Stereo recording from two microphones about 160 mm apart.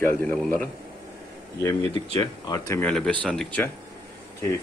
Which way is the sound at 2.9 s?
5° left (ahead or behind).